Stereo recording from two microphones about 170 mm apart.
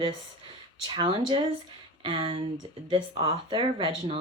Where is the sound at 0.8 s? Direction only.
30° right (ahead or behind).